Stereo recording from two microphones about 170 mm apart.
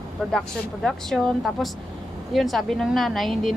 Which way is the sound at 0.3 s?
Centre (ahead or behind).